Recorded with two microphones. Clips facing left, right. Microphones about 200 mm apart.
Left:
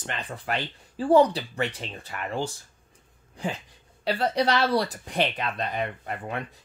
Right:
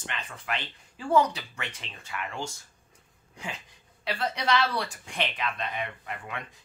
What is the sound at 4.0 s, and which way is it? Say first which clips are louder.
Speech: left 7 dB; 35° left (ahead or behind).